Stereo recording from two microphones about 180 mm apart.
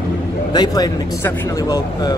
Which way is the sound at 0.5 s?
20° left (ahead or behind).